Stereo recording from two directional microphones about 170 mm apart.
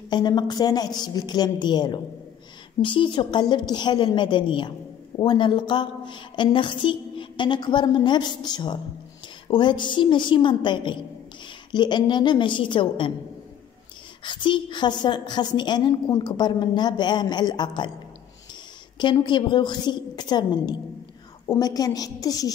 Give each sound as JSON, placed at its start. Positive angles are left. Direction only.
{"t": 0.1, "sound": "a woman's voice", "side_deg": 25}
{"t": 14.2, "sound": "a woman's voice", "side_deg": 30}
{"t": 18.9, "sound": "a woman's voice", "side_deg": 25}